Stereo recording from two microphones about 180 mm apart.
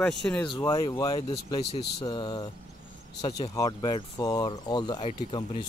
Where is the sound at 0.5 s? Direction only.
25° left (ahead or behind).